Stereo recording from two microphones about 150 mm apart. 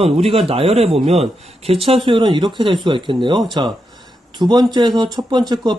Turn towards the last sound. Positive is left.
turn(degrees=-30)  # may be behind; listen again after turning